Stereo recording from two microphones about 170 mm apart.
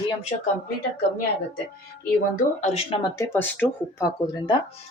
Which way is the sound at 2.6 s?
40° left (ahead or behind).